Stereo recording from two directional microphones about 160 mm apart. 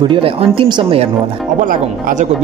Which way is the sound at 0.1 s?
30° right (ahead or behind).